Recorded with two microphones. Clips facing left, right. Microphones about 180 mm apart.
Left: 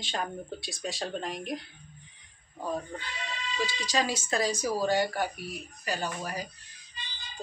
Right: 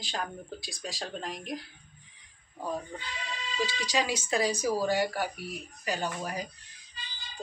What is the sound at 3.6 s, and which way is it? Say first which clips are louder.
Speech: even; 10° right (ahead or behind).